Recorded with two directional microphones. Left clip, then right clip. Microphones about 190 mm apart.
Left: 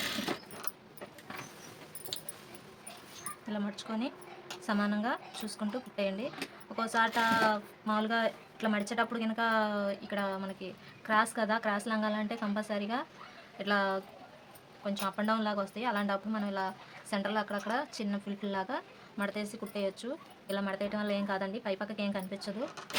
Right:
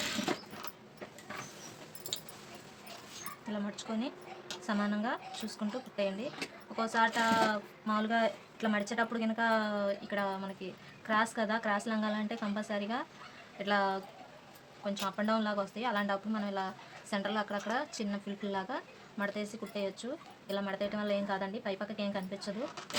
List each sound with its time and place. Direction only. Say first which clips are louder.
3.5 s speech: left 1 dB; 20° left (ahead or behind)